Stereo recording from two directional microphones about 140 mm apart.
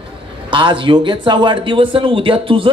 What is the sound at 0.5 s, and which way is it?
Speech, 35° right (ahead or behind).